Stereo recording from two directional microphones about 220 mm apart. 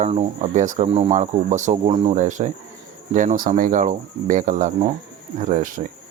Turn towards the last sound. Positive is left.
turn(degrees=-35)  # may be behind; listen again after turning